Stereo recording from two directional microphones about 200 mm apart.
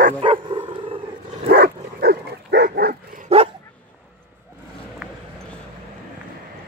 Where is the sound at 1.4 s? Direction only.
50° right (ahead or behind).